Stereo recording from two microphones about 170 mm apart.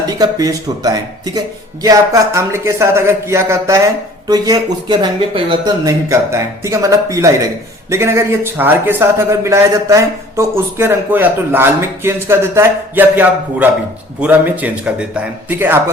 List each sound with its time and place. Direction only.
0.0 s speech: 20° right (ahead or behind)